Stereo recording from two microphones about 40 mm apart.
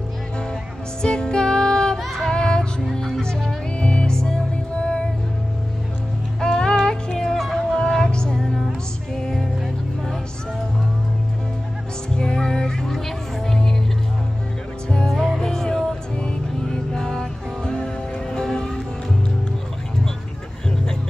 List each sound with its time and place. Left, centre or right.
1.0 s music: centre
2.0 s music: centre
2.3 s music: left
2.8 s music: centre
3.8 s music: left
6.4 s music: centre
12.2 s music: centre
15.4 s music: centre